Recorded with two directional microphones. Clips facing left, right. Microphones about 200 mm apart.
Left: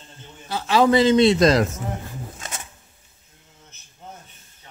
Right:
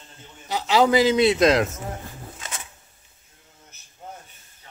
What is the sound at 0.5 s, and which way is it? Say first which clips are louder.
A man's voice: left 1 dB; 15° right (ahead or behind).